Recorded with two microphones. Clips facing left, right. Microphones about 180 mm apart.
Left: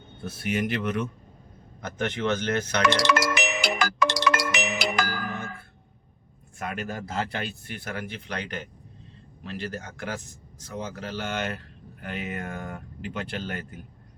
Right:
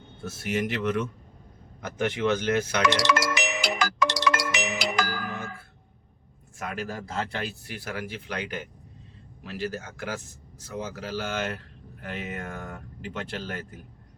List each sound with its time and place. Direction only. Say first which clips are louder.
0.3 s speech: left 1 dB; centre (ahead or behind)
1.8 s speech: right 2 dB; 10° right (ahead or behind)
2.8 s music: left 4 dB; 55° left (ahead or behind)
6.6 s speech: left 1 dB; centre (ahead or behind)